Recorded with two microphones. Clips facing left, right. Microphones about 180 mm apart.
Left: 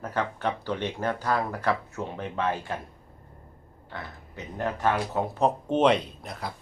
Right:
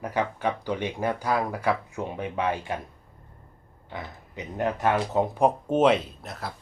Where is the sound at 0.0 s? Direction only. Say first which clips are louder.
Right 2 dB; 10° right (ahead or behind).